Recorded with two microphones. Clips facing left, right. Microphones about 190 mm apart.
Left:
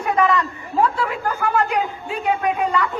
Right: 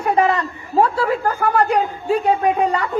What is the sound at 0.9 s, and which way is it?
Speech, 40° right (ahead or behind).